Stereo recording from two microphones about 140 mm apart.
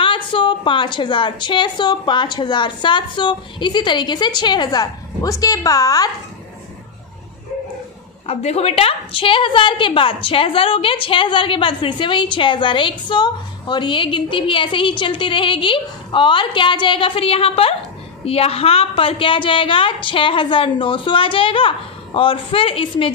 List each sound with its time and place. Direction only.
0.0 s a woman's voice: 40° left (ahead or behind)
8.3 s a woman's voice: 50° left (ahead or behind)